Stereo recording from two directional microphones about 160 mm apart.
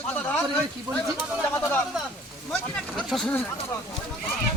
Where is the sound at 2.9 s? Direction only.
Centre (ahead or behind).